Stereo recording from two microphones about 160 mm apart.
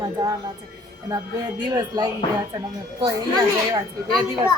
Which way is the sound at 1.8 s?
25° right (ahead or behind).